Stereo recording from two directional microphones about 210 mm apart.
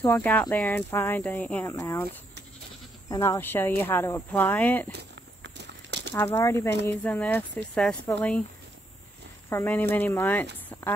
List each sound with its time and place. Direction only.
0.1 s speech: 5° left (ahead or behind)
3.1 s speech: 15° left (ahead or behind)
4.9 s walk: 55° right (ahead or behind)
6.1 s speech: 15° left (ahead or behind)
9.5 s speech: 10° left (ahead or behind)